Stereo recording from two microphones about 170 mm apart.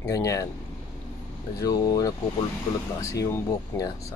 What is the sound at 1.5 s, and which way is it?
Speech, 20° left (ahead or behind).